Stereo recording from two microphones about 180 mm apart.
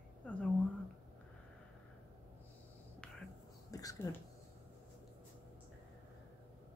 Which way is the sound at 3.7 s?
20° left (ahead or behind).